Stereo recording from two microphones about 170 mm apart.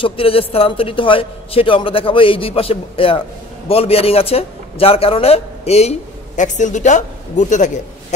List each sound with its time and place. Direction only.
0.0 s speech: 35° left (ahead or behind)